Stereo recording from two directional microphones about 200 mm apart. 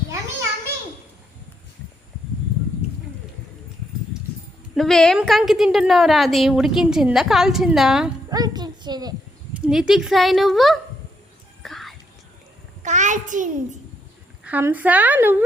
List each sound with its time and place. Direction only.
4.7 s a woman's voice: centre (ahead or behind)
8.3 s a sound: 20° right (ahead or behind)
9.6 s a woman's voice: 5° right (ahead or behind)
11.6 s music: centre (ahead or behind)
12.8 s a sound: 35° right (ahead or behind)
14.4 s a woman's voice: 10° right (ahead or behind)